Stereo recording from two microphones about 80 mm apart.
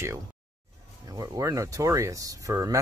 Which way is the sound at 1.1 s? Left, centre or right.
Right.